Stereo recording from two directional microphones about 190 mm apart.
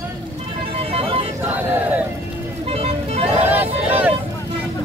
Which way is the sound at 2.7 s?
30° right (ahead or behind).